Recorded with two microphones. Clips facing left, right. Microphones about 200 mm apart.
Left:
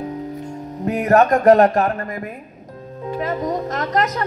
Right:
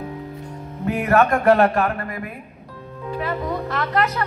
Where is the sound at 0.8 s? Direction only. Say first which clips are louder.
Left 3 dB; 40° left (ahead or behind).